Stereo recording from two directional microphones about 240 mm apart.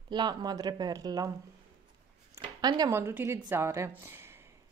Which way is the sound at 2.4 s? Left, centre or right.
Centre.